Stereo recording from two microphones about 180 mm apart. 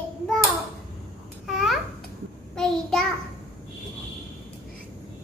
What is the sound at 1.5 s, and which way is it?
Babbling, centre (ahead or behind).